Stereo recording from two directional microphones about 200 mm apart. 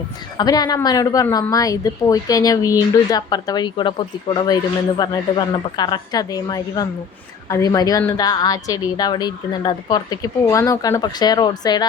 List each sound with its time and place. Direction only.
0.3 s a woman's voice: 20° left (ahead or behind)